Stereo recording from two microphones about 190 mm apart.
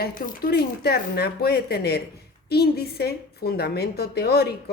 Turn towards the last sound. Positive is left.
turn(degrees=55)  # may be behind; listen again after turning